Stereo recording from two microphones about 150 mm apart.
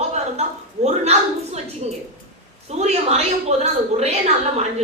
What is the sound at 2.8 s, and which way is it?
A woman's voice, 45° right (ahead or behind).